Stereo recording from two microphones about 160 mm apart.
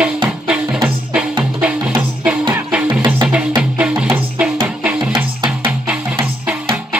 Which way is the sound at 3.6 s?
10° right (ahead or behind).